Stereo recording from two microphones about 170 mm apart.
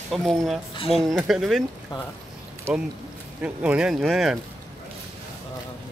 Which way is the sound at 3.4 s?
5° right (ahead or behind).